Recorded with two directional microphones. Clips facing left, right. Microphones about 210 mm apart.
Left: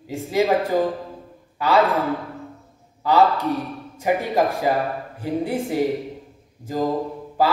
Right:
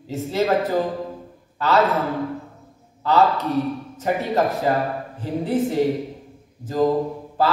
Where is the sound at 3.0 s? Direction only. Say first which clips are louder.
Left 1 dB; 10° left (ahead or behind).